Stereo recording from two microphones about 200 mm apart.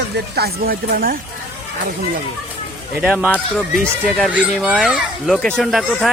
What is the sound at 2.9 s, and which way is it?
Speech, 5° right (ahead or behind).